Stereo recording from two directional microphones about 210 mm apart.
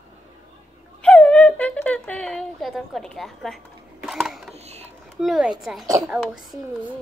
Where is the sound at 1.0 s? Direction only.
5° left (ahead or behind).